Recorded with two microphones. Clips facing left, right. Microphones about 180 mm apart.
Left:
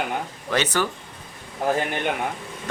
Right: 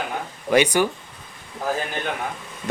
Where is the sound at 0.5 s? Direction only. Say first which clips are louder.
Right 6 dB; 15° right (ahead or behind).